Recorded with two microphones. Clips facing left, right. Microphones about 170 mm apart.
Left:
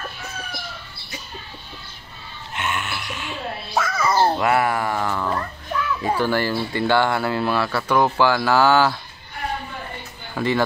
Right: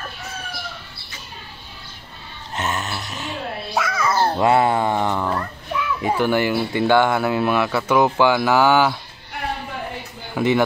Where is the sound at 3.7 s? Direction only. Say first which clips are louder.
Left 1 dB; 5° left (ahead or behind).